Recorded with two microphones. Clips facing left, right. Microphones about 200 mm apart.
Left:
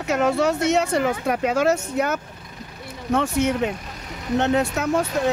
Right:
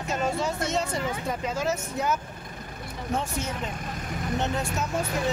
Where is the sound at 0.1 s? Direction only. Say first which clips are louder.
Left 8 dB; 75° left (ahead or behind).